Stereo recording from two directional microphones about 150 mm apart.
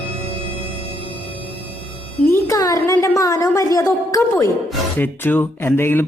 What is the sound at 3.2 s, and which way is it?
A woman's voice, 20° left (ahead or behind).